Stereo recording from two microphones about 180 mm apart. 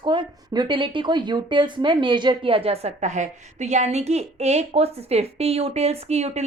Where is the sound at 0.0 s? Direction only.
25° right (ahead or behind).